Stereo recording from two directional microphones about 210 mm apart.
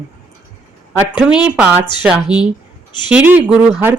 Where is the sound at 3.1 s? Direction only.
10° right (ahead or behind).